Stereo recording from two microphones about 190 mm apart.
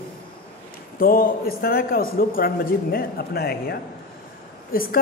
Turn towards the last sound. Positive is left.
turn(degrees=50)  # may be behind; listen again after turning